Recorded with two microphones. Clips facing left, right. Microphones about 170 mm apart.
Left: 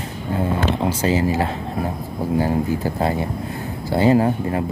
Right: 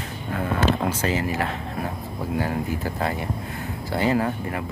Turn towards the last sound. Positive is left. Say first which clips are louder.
# left 6 dB
turn(degrees=30)  # may be behind; listen again after turning